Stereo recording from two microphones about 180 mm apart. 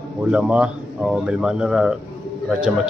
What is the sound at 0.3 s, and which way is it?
Speech, 5° right (ahead or behind).